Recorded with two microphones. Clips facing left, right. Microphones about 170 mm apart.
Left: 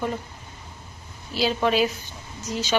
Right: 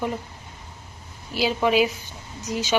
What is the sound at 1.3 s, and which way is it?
A woman's voice, 10° right (ahead or behind).